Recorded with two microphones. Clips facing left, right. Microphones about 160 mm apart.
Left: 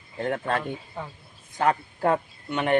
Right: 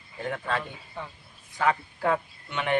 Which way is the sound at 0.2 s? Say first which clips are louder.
Left 4 dB; 45° left (ahead or behind).